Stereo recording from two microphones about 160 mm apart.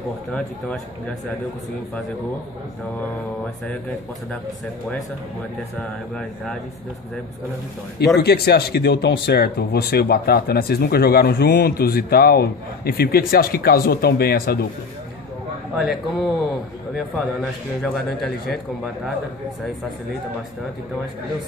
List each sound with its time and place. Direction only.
0.3 s a man's voice: 5° left (ahead or behind)
5.8 s a man's voice: 5° left (ahead or behind)
8.2 s speech: 75° left (ahead or behind)
15.8 s a man's voice: centre (ahead or behind)